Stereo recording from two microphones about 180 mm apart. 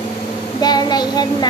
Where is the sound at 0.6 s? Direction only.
25° left (ahead or behind).